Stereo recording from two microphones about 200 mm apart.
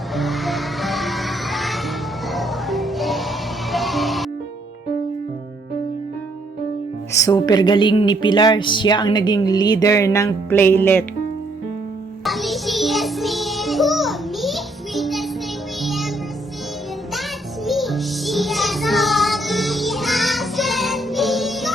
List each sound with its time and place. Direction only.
0.1 s music: centre (ahead or behind)
7.1 s speech: 15° left (ahead or behind)
12.2 s music: centre (ahead or behind)
17.7 s music: centre (ahead or behind)